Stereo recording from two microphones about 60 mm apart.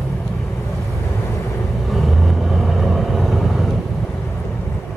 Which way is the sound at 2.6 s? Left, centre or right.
Centre.